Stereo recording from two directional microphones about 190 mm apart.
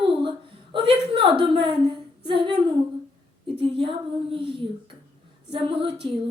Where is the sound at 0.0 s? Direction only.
25° right (ahead or behind).